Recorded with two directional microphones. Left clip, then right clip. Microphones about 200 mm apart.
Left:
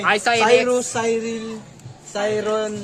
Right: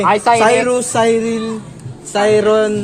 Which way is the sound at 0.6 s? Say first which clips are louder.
Right 7 dB; 45° right (ahead or behind).